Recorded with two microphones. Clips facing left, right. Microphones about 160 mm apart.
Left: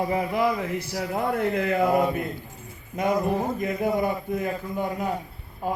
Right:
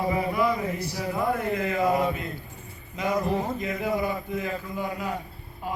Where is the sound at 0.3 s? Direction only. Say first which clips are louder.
Left 1 dB; 75° left (ahead or behind).